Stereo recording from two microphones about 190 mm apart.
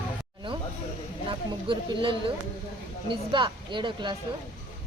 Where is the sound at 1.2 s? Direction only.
25° right (ahead or behind).